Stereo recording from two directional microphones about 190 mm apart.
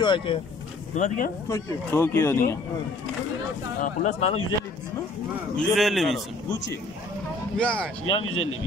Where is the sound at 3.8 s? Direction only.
35° left (ahead or behind).